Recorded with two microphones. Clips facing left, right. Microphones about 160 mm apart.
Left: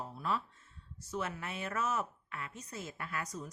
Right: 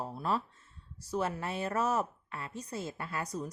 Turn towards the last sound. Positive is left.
turn(degrees=-35)  # may be behind; listen again after turning